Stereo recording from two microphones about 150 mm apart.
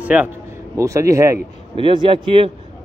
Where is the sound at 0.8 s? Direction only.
20° right (ahead or behind).